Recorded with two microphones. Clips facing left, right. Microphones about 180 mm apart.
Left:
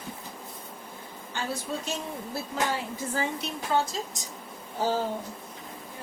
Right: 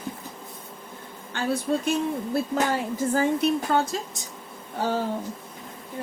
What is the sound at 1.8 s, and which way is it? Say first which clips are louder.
A woman's voice: right 9 dB; 55° right (ahead or behind).